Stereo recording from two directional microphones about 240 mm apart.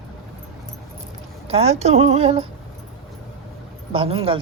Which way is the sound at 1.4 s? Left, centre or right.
Right.